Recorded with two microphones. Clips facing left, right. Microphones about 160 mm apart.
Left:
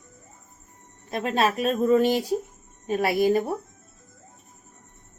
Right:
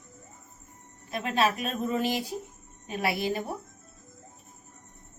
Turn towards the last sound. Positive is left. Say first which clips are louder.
# left 8 dB
turn(degrees=45)  # may be behind; listen again after turning